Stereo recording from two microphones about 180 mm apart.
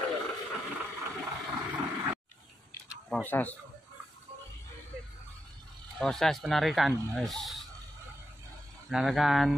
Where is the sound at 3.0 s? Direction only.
10° left (ahead or behind).